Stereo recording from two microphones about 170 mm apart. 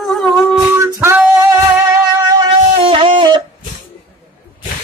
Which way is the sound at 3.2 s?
25° right (ahead or behind).